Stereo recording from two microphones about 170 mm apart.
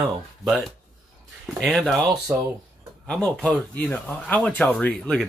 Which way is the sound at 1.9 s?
15° right (ahead or behind).